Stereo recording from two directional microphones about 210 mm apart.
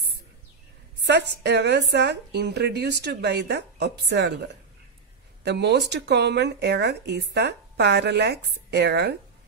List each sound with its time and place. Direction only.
1.0 s speech: 55° right (ahead or behind)
5.4 s speech: 55° right (ahead or behind)